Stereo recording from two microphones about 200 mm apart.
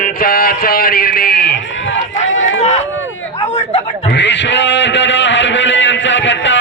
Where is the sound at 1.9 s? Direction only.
75° left (ahead or behind).